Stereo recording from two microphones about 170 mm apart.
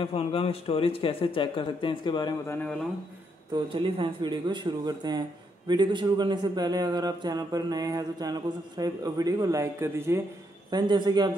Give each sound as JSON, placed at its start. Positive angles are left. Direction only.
{"t": 0.0, "sound": "speech", "side_deg": 35}
{"t": 2.4, "sound": "speech", "side_deg": 10}
{"t": 3.5, "sound": "a man's voice", "side_deg": -30}